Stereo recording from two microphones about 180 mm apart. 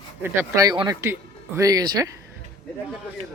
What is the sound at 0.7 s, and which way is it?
Speech, 20° right (ahead or behind).